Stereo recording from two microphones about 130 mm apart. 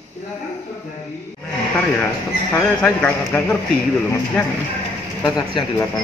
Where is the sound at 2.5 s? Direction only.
10° left (ahead or behind).